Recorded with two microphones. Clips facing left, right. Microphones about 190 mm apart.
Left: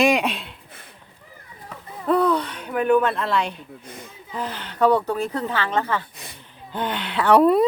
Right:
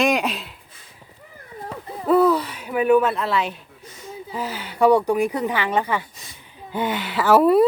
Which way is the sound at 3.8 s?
55° left (ahead or behind).